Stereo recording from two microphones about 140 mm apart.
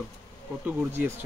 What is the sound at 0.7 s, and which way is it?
Speech, 15° right (ahead or behind).